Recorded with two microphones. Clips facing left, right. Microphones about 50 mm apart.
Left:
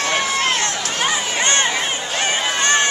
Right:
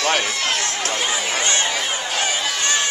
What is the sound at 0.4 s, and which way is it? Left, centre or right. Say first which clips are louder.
Run: left 3 dB; left.